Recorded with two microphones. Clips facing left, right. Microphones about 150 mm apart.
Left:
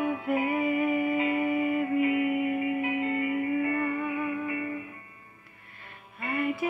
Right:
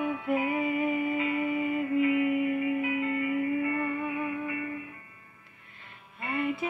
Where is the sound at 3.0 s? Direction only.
25° left (ahead or behind).